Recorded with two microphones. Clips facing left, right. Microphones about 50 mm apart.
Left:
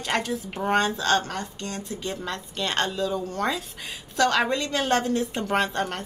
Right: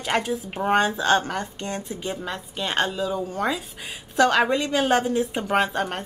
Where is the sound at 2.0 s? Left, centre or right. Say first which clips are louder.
Even; centre.